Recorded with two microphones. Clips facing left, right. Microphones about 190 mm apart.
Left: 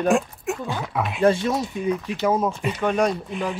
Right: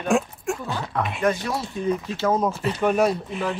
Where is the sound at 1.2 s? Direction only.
25° left (ahead or behind).